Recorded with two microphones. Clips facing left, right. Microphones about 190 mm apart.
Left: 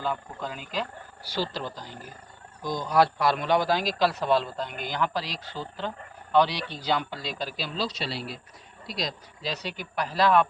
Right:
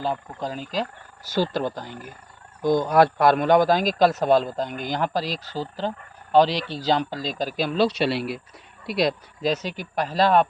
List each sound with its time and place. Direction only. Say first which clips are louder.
0.0 s speech: right 4 dB; 35° right (ahead or behind)
6.9 s speech: right 4 dB; 40° right (ahead or behind); by 9.5 s 60° right (ahead or behind)
9.5 s speech: right 8 dB; 45° right (ahead or behind)